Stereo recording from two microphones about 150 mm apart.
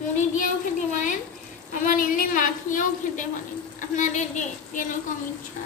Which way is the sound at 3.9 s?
55° left (ahead or behind).